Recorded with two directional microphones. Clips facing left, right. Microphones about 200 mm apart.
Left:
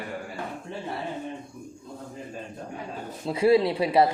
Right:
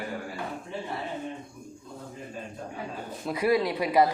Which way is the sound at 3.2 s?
25° left (ahead or behind).